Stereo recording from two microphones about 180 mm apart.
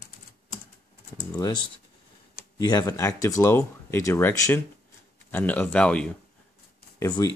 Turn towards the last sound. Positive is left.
turn(degrees=20)  # may be behind; listen again after turning